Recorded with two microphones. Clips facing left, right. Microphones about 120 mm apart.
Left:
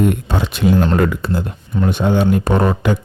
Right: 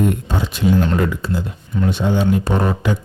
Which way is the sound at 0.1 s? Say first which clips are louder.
Left 2 dB; 70° left (ahead or behind).